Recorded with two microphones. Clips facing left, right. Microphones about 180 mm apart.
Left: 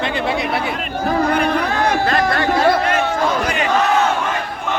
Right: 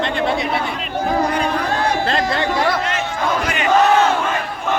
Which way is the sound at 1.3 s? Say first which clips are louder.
Left 3 dB; 60° left (ahead or behind).